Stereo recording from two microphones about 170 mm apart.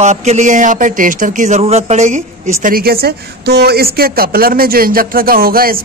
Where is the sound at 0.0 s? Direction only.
40° right (ahead or behind).